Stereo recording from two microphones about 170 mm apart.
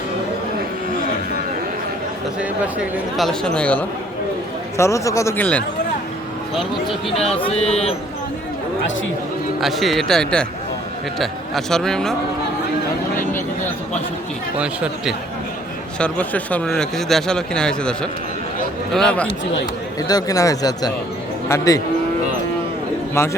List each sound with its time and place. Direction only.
2.4 s speech: 5° right (ahead or behind)
4.8 s speech: 20° left (ahead or behind)
7.1 s speech: 35° left (ahead or behind)
9.6 s speech: centre (ahead or behind)
14.6 s speech: 5° right (ahead or behind)
16.0 s speech: 5° left (ahead or behind)
20.0 s speech: 20° left (ahead or behind)
23.2 s speech: 15° left (ahead or behind)